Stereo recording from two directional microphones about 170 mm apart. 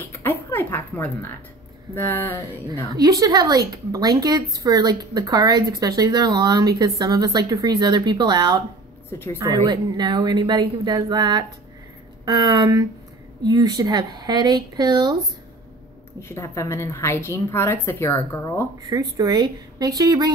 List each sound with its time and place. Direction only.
0.1 s a woman's voice: 10° left (ahead or behind)
3.0 s speech: 20° right (ahead or behind)
9.7 s speech: 25° right (ahead or behind)
16.2 s a woman's voice: 15° left (ahead or behind)
18.9 s speech: 25° right (ahead or behind)